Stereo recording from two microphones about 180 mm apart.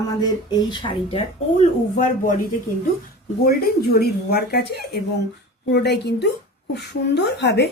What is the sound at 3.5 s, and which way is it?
A woman's voice, 60° left (ahead or behind).